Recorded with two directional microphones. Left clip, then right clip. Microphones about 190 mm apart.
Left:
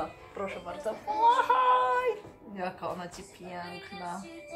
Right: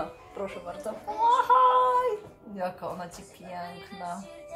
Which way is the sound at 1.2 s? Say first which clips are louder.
Right 3 dB; 25° left (ahead or behind).